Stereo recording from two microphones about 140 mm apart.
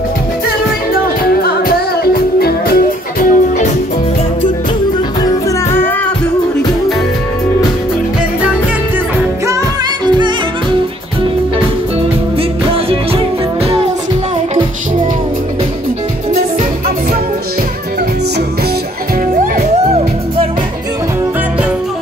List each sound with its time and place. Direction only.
1.4 s music: 90° left
5.7 s music: 15° left (ahead or behind)
12.4 s music: 45° right (ahead or behind)